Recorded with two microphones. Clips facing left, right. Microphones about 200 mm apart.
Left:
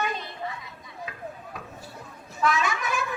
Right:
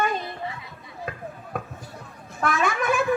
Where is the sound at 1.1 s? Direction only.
50° right (ahead or behind).